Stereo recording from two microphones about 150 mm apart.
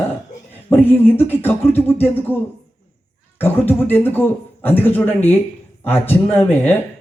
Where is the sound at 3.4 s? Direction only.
15° left (ahead or behind).